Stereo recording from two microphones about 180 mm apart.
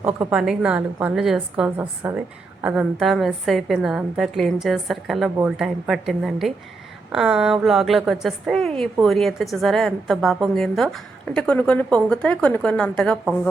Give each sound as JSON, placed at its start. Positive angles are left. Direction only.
{"t": 0.0, "sound": "a woman's voice", "side_deg": -5}